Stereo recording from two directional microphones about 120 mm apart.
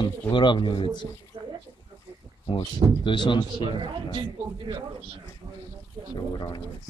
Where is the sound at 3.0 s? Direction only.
40° left (ahead or behind).